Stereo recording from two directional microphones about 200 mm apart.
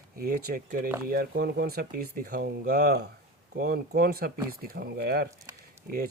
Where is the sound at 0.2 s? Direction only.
45° right (ahead or behind).